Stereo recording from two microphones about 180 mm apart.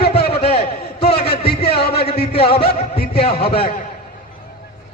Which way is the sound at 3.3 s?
30° left (ahead or behind).